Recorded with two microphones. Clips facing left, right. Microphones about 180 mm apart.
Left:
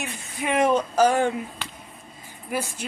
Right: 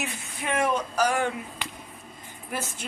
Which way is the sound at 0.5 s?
20° left (ahead or behind).